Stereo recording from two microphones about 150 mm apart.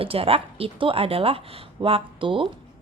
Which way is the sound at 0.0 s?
40° right (ahead or behind).